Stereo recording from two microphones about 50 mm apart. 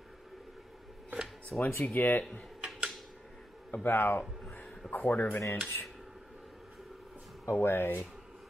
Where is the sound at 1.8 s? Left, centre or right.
Left.